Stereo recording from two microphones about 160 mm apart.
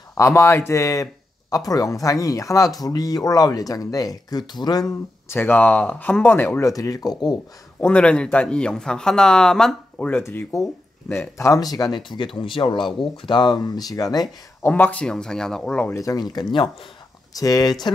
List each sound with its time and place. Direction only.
0.2 s speech: 15° left (ahead or behind)
7.8 s speech: 5° left (ahead or behind); by 14.2 s 25° left (ahead or behind)
14.6 s speech: 10° left (ahead or behind)
15.9 s speech: 20° left (ahead or behind)